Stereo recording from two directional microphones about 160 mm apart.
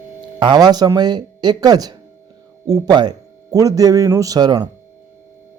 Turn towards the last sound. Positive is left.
turn(degrees=-25)  # may be behind; listen again after turning